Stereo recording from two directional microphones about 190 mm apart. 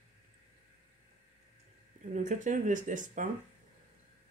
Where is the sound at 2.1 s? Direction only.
40° right (ahead or behind).